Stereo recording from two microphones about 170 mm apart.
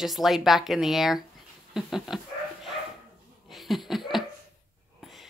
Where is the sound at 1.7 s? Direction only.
Centre (ahead or behind).